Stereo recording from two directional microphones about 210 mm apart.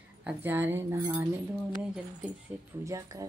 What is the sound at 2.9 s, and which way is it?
Speech, 15° right (ahead or behind).